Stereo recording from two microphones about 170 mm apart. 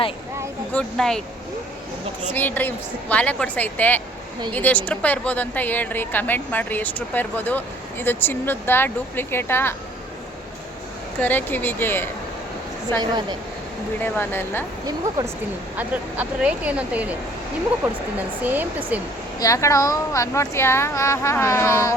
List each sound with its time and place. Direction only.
0.7 s speech: 5° left (ahead or behind)
2.3 s a woman's voice: 10° left (ahead or behind)
11.2 s a woman's voice: 10° left (ahead or behind)
14.0 s a woman's voice: 10° left (ahead or behind)
15.8 s speech: 10° right (ahead or behind)
18.4 s speech: 10° right (ahead or behind)
19.4 s a woman's voice: 20° left (ahead or behind)